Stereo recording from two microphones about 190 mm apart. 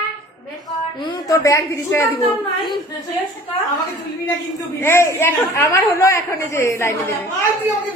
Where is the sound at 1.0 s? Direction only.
20° left (ahead or behind).